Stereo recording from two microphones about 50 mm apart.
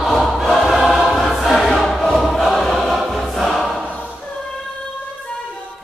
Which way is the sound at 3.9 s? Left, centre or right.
Left.